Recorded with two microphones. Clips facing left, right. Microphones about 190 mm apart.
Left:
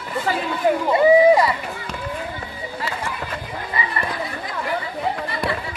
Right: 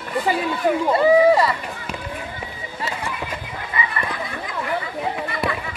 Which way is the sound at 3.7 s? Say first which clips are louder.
Right 1 dB; 35° left (ahead or behind).